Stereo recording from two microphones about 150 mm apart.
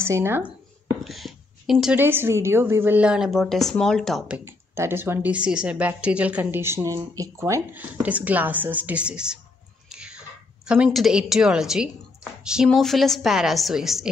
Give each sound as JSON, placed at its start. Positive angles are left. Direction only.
{"t": 0.0, "sound": "speech", "side_deg": -15}
{"t": 1.0, "sound": "a sound", "side_deg": 0}
{"t": 2.0, "sound": "speech", "side_deg": -15}
{"t": 4.5, "sound": "speech", "side_deg": -15}
{"t": 9.8, "sound": "a sound", "side_deg": -5}
{"t": 10.7, "sound": "a woman's voice", "side_deg": -5}